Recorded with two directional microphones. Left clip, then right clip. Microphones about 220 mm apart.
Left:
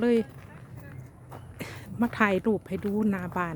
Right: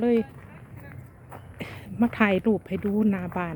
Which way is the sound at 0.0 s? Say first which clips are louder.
Right 1 dB; 10° left (ahead or behind).